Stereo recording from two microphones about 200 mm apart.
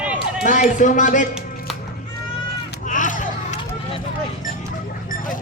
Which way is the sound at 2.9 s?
40° left (ahead or behind).